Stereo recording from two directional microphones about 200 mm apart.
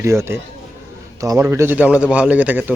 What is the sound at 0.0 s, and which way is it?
Speech, 15° right (ahead or behind).